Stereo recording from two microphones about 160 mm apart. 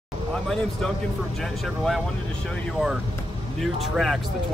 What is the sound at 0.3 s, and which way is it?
Speech, centre (ahead or behind).